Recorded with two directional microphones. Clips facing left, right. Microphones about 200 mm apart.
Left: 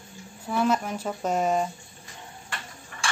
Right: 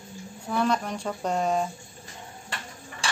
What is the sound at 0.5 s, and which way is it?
Speech, 5° left (ahead or behind).